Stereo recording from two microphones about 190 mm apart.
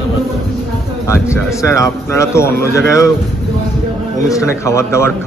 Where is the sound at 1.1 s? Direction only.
15° left (ahead or behind).